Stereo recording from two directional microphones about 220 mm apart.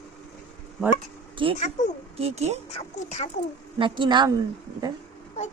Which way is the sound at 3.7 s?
20° right (ahead or behind).